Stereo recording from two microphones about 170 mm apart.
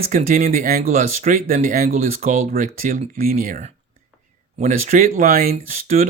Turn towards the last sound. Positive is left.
turn(degrees=-40)  # may be behind; listen again after turning